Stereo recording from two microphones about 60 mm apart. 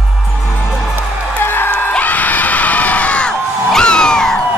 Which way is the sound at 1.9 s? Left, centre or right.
Left.